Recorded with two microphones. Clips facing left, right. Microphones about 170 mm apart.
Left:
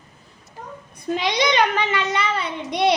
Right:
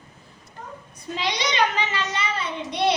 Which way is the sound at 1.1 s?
60° left (ahead or behind).